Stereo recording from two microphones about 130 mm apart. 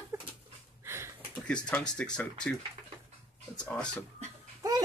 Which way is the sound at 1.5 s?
10° left (ahead or behind).